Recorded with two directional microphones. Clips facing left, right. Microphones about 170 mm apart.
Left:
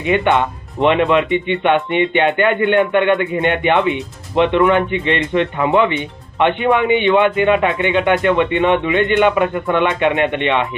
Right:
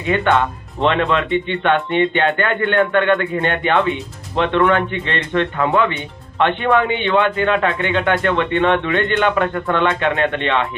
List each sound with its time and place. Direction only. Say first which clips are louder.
0.0 s speech: left 2 dB; 15° left (ahead or behind)